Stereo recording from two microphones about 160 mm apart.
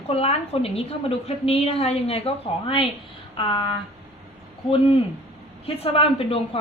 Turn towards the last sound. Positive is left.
turn(degrees=35)  # may be behind; listen again after turning